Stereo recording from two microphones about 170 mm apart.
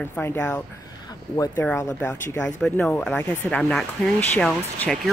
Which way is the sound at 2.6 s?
5° left (ahead or behind).